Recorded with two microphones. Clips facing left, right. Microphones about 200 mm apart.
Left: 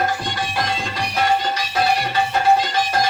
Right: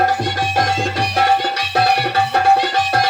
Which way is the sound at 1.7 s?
65° right (ahead or behind).